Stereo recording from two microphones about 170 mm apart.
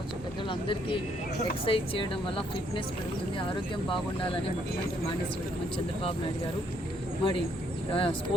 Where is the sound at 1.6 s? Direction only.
30° left (ahead or behind).